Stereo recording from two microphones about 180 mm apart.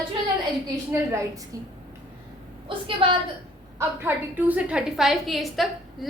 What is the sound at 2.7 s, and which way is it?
Speech, 30° right (ahead or behind).